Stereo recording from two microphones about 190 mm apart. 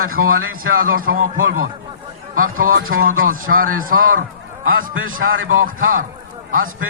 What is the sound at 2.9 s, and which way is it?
Speech, 90° right.